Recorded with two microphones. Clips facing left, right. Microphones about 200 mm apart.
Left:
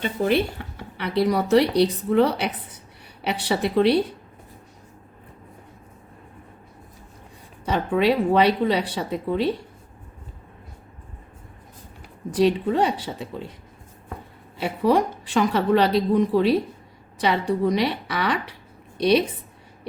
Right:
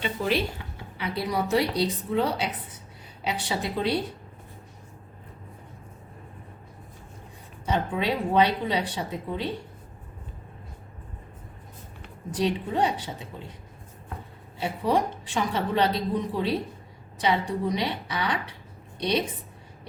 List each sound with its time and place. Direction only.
0.0 s speech: 55° left (ahead or behind)
7.6 s speech: 65° left (ahead or behind)
12.3 s speech: 65° left (ahead or behind)
14.6 s speech: 70° left (ahead or behind)